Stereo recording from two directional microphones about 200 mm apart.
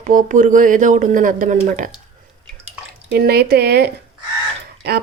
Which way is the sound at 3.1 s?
50° right (ahead or behind).